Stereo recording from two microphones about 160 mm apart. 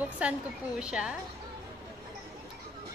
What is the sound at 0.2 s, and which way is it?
Speech, 10° right (ahead or behind).